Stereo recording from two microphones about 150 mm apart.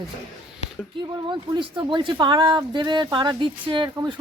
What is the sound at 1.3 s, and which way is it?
Speech, 30° right (ahead or behind).